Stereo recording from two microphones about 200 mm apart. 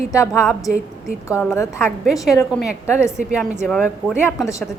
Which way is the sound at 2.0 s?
Centre (ahead or behind).